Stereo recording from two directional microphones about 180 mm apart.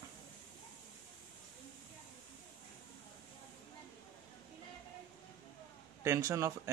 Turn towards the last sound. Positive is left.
turn(degrees=-15)  # may be behind; listen again after turning